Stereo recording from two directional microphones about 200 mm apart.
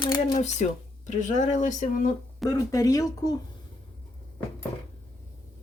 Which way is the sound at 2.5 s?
15° left (ahead or behind).